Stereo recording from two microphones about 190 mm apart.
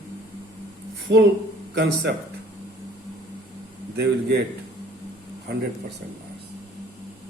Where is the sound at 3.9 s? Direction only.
60° right (ahead or behind).